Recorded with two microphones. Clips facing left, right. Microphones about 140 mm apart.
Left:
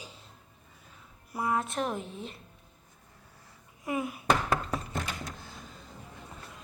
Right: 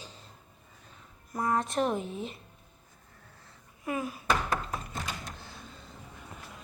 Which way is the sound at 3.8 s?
15° left (ahead or behind).